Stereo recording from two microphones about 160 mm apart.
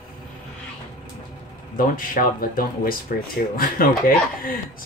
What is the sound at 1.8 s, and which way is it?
Speech, 60° left (ahead or behind).